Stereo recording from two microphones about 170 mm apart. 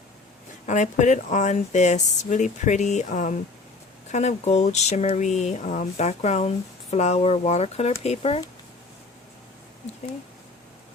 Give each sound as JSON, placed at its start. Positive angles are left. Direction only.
{"t": 0.6, "sound": "speech", "side_deg": 45}